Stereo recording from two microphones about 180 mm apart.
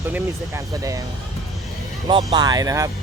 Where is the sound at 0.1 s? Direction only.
15° right (ahead or behind).